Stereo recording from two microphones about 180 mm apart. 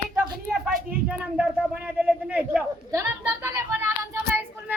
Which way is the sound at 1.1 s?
5° right (ahead or behind).